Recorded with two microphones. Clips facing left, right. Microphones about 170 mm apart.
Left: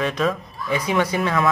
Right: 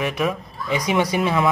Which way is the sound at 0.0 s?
10° right (ahead or behind).